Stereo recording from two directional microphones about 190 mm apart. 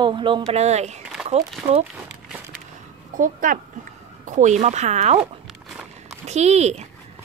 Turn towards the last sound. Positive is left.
turn(degrees=-35)  # may be behind; listen again after turning